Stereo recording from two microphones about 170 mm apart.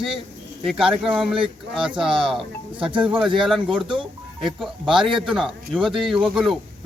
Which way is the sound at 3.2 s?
Centre (ahead or behind).